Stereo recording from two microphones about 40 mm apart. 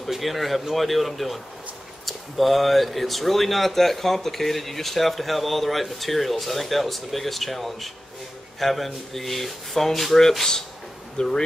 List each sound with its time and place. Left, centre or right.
0.0 s speech: centre